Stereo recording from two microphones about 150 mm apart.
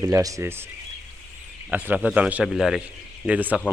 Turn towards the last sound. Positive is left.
turn(degrees=-10)  # may be behind; listen again after turning